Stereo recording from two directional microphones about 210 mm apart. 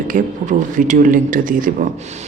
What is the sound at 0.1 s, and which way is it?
Speech, 35° right (ahead or behind).